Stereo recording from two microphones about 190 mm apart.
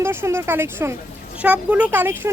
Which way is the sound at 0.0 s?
15° right (ahead or behind).